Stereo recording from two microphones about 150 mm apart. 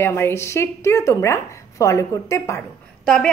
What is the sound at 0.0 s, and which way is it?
Speech, 15° left (ahead or behind).